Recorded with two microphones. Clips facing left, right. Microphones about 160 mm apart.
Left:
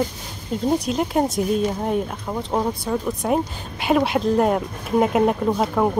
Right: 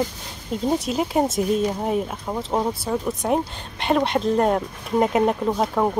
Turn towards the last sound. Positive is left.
turn(degrees=0)  # may be behind; listen again after turning